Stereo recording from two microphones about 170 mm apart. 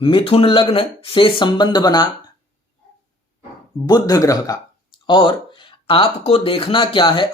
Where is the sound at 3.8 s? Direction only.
25° left (ahead or behind).